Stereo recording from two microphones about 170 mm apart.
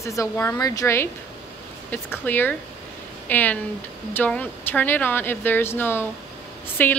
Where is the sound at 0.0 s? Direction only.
20° left (ahead or behind).